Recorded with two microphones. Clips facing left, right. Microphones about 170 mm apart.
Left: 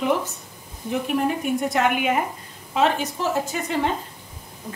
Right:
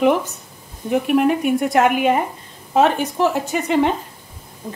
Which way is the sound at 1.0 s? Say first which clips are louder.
Right 7 dB; 70° right (ahead or behind).